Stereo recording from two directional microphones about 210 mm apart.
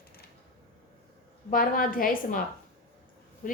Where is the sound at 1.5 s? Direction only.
40° left (ahead or behind).